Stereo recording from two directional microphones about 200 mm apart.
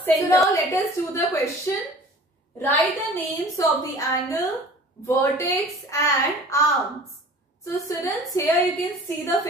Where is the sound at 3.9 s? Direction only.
15° left (ahead or behind).